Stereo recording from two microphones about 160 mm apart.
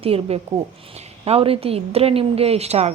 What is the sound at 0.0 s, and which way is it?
Speech, 35° right (ahead or behind).